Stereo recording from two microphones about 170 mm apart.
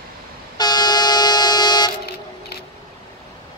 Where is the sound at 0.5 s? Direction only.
25° left (ahead or behind).